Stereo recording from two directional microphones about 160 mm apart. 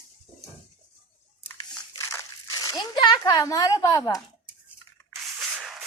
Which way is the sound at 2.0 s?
20° left (ahead or behind).